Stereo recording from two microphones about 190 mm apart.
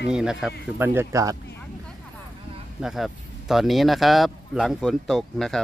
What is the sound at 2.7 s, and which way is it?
Speech, centre (ahead or behind).